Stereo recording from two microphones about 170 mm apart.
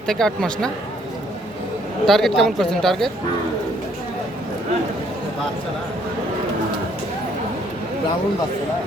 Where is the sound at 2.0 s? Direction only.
Centre (ahead or behind).